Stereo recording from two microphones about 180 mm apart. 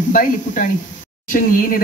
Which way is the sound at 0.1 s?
50° left (ahead or behind).